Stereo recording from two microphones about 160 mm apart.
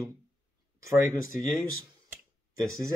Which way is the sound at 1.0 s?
55° left (ahead or behind).